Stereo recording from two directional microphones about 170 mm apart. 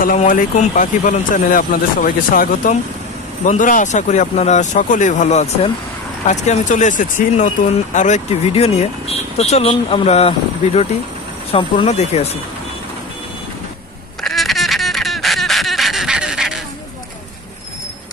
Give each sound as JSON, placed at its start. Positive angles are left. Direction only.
{"t": 0.0, "sound": "speech", "side_deg": 50}
{"t": 14.2, "sound": "duck", "side_deg": 0}